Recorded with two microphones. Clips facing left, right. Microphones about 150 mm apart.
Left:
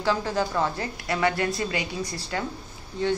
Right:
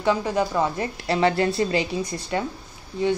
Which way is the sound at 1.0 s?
30° right (ahead or behind).